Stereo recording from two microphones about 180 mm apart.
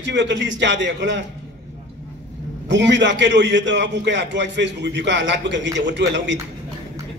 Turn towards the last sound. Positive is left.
turn(degrees=-80)